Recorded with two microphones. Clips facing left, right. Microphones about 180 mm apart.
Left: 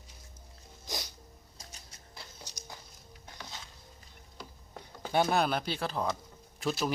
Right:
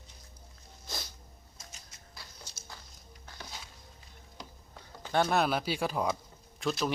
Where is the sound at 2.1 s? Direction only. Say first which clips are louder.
Left 3 dB; 15° left (ahead or behind).